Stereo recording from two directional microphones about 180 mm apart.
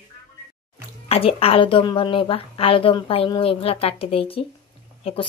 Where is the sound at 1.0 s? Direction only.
35° left (ahead or behind).